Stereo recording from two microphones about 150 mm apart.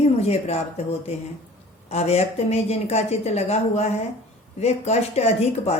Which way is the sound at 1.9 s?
45° left (ahead or behind).